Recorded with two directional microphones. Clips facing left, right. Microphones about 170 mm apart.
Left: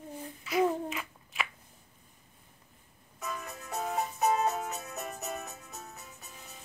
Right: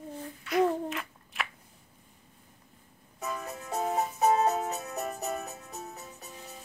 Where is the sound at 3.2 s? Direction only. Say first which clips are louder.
Right 3 dB; 30° right (ahead or behind).